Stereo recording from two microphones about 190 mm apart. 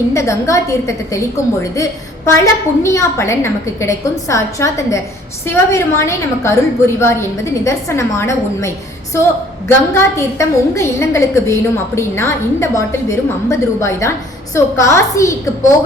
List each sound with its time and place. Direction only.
0.1 s a woman's voice: 15° left (ahead or behind)